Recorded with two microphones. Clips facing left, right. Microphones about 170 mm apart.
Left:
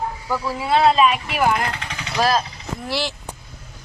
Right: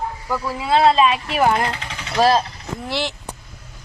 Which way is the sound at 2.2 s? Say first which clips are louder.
Right 4 dB; centre (ahead or behind).